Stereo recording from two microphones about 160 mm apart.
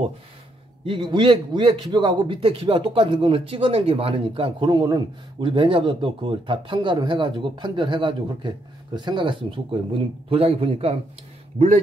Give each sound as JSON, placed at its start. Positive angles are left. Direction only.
{"t": 0.8, "sound": "a man's voice", "side_deg": -30}